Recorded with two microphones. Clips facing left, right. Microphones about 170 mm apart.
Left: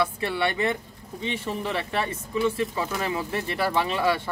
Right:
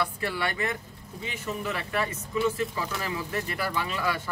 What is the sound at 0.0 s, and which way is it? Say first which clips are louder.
Speech: left 4 dB; 25° left (ahead or behind).